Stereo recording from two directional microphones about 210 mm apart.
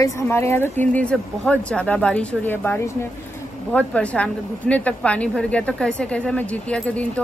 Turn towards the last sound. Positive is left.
turn(degrees=5)  # may be behind; listen again after turning